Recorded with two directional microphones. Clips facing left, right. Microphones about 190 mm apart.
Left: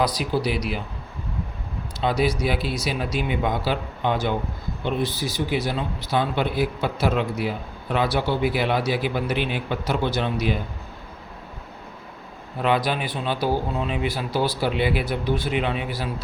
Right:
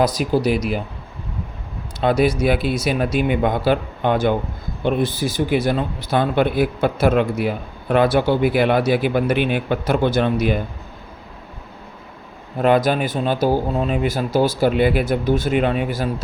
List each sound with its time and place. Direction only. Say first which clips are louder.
0.0 s speech: right 5 dB; 45° right (ahead or behind)
2.0 s speech: right 5 dB; 55° right (ahead or behind)
12.5 s speech: right 6 dB; 45° right (ahead or behind)